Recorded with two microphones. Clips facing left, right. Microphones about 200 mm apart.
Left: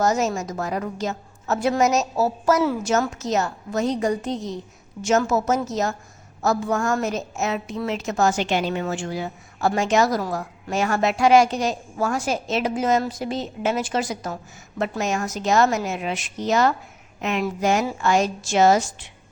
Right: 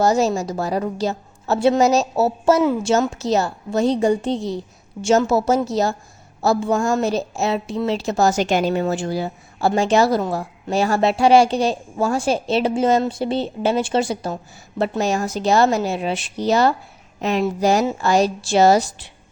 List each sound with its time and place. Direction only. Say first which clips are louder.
0.0 s a woman's voice: right 4 dB; 30° right (ahead or behind)